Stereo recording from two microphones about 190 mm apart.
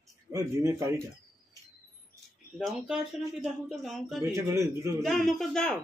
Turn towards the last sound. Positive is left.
turn(degrees=5)  # may be behind; listen again after turning